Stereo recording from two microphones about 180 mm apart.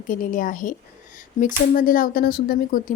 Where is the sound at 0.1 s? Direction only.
50° left (ahead or behind).